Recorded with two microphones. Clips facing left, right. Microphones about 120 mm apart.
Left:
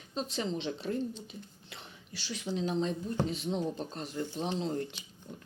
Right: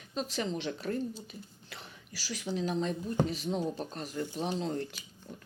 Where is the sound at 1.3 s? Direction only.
25° left (ahead or behind).